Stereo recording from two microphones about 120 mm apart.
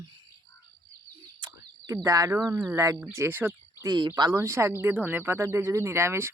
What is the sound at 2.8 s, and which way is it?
Speech, 25° right (ahead or behind).